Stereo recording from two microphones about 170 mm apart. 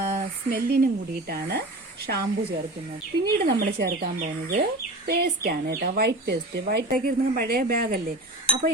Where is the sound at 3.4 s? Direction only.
70° right (ahead or behind).